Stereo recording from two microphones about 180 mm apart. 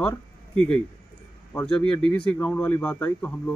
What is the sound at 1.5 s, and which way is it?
Speech, 5° left (ahead or behind).